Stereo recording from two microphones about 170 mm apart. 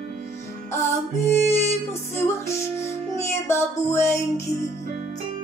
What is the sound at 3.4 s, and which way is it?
Music, 15° left (ahead or behind).